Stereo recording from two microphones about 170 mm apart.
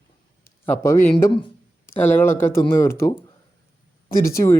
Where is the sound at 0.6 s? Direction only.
15° left (ahead or behind).